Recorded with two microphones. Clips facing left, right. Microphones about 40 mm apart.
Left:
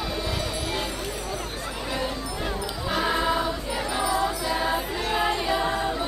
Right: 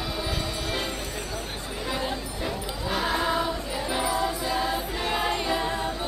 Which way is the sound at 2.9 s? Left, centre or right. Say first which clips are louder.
Left 2 dB; centre.